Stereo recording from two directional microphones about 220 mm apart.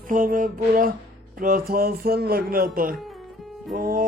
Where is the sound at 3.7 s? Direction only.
40° right (ahead or behind).